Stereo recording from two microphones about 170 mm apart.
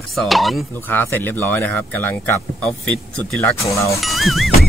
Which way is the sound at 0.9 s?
10° left (ahead or behind).